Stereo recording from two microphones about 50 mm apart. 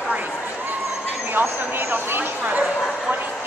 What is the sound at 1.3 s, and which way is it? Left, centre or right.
Speech, right.